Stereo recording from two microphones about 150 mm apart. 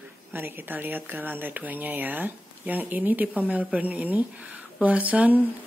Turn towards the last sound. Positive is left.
turn(degrees=-10)  # may be behind; listen again after turning